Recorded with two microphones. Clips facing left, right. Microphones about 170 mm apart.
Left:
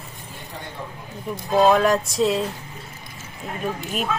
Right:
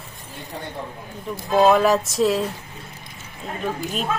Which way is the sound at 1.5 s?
Centre (ahead or behind).